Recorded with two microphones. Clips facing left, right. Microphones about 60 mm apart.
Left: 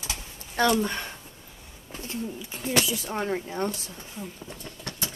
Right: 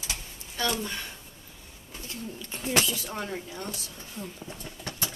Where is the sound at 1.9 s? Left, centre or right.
Left.